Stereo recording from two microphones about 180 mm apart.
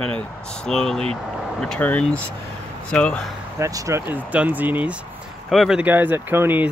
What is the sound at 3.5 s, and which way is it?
Speech, 15° right (ahead or behind).